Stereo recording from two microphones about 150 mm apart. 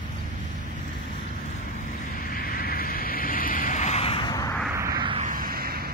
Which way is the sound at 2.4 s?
80° left.